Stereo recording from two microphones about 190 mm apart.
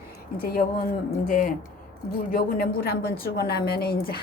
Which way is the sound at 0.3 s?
50° left (ahead or behind).